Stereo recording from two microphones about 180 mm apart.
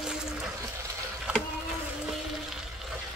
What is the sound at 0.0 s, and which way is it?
Water, 5° right (ahead or behind).